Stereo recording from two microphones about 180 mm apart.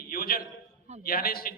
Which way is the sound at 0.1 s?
55° left (ahead or behind).